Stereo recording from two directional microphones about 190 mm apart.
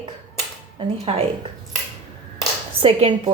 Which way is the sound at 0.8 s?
30° right (ahead or behind).